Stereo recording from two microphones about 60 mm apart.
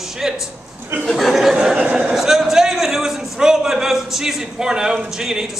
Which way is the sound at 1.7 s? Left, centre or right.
Centre.